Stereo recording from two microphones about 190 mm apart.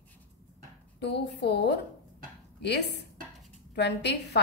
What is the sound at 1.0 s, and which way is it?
A woman's voice, 65° left (ahead or behind).